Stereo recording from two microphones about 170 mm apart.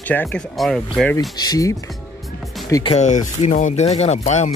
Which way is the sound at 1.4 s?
20° left (ahead or behind).